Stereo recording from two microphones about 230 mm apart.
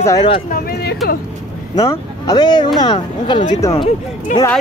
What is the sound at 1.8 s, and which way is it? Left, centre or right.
Speech, centre.